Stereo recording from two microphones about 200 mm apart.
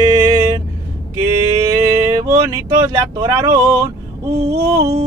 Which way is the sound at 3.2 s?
20° right (ahead or behind).